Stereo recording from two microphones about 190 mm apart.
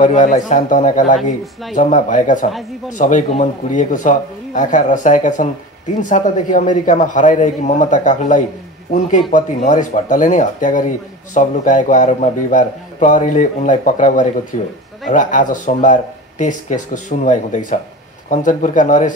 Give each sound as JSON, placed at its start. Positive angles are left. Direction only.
{"t": 0.0, "sound": "a man's voice", "side_deg": 40}